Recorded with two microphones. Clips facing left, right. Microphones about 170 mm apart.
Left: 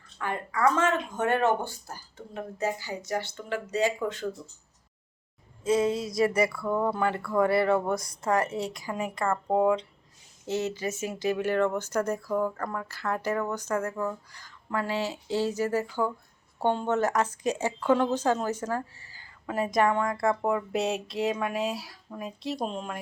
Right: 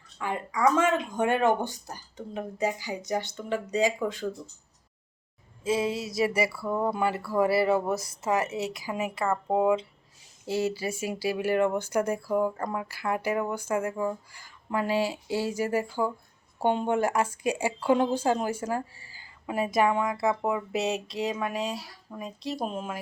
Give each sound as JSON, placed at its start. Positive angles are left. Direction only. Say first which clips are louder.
{"t": 0.2, "sound": "a woman's voice", "louder": "even", "side_deg": -15}
{"t": 5.6, "sound": "a sound", "louder": "left 3 dB", "side_deg": -25}
{"t": 6.2, "sound": "a woman's voice", "louder": "left 2 dB", "side_deg": -5}